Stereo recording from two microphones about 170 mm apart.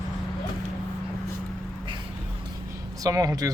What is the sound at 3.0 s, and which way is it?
Speech, 20° right (ahead or behind).